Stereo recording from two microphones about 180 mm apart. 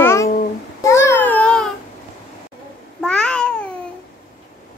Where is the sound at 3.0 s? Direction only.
5° left (ahead or behind).